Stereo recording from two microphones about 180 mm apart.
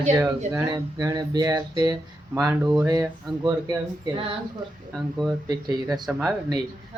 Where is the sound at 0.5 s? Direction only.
20° right (ahead or behind).